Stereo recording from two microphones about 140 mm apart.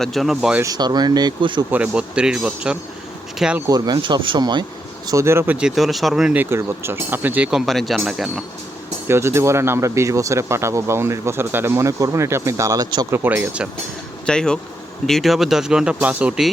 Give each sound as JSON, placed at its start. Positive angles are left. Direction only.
{"t": 0.0, "sound": "speech", "side_deg": 0}
{"t": 0.6, "sound": "speech", "side_deg": -30}
{"t": 1.7, "sound": "speech", "side_deg": -10}
{"t": 3.7, "sound": "speech", "side_deg": -25}
{"t": 5.0, "sound": "speech", "side_deg": -20}
{"t": 9.0, "sound": "speech", "side_deg": -20}
{"t": 13.1, "sound": "speech", "side_deg": -15}
{"t": 14.3, "sound": "speech", "side_deg": 5}